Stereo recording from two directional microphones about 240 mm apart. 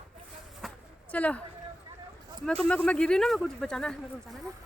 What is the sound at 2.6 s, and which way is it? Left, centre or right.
Speech, centre.